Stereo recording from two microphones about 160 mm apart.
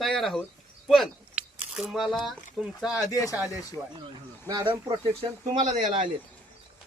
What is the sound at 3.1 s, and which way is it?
Speech, 20° left (ahead or behind).